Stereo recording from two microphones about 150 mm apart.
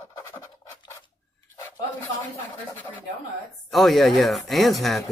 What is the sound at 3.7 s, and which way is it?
Speech, centre (ahead or behind).